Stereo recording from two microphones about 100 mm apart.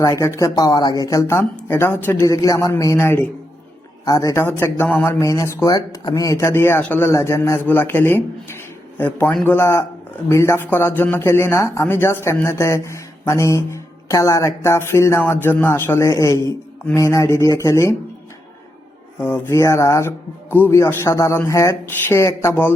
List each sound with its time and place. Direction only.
0.0 s speech: 30° left (ahead or behind)
2.2 s speech: 35° left (ahead or behind)
3.0 s speech: 20° left (ahead or behind)
4.0 s speech: 35° left (ahead or behind)
4.4 s speech: 25° left (ahead or behind)
5.2 s speech: 30° left (ahead or behind)
19.2 s speech: 25° left (ahead or behind)